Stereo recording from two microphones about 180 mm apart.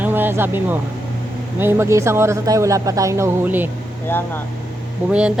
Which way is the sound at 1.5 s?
10° right (ahead or behind).